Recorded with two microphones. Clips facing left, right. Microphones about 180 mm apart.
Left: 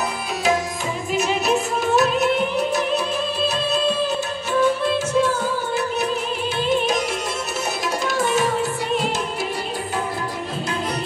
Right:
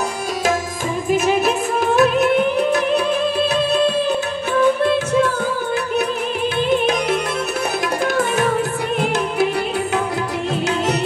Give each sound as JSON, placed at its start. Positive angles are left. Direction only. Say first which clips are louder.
{"t": 1.1, "sound": "music", "louder": "right 3 dB", "side_deg": -50}
{"t": 8.0, "sound": "tabla", "louder": "right 1 dB", "side_deg": -55}
{"t": 8.9, "sound": "music", "louder": "right 7 dB", "side_deg": -55}